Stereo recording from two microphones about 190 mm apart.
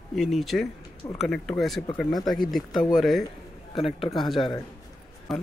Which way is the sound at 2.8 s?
20° left (ahead or behind).